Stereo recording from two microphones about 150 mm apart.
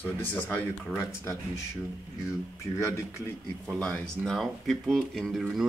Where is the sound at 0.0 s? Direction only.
10° left (ahead or behind).